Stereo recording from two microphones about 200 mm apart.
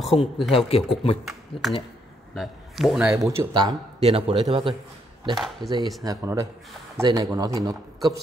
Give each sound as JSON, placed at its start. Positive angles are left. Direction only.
{"t": 0.0, "sound": "speech", "side_deg": 0}
{"t": 0.7, "sound": "speech", "side_deg": 30}
{"t": 2.3, "sound": "a man's voice", "side_deg": 0}
{"t": 3.2, "sound": "a man's voice", "side_deg": -15}
{"t": 4.0, "sound": "a man's voice", "side_deg": -30}
{"t": 5.3, "sound": "speech", "side_deg": 0}
{"t": 6.0, "sound": "a man's voice", "side_deg": -15}